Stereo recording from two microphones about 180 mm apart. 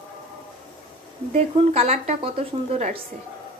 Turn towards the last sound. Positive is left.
turn(degrees=-35)  # may be behind; listen again after turning